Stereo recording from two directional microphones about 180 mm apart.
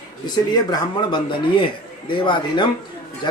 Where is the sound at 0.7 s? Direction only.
25° left (ahead or behind).